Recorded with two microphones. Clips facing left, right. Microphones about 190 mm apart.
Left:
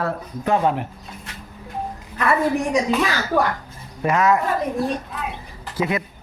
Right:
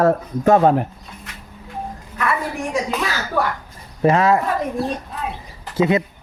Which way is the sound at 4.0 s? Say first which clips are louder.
Right 3 dB; 30° right (ahead or behind).